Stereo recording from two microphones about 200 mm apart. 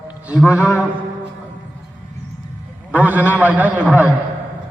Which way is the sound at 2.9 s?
10° right (ahead or behind).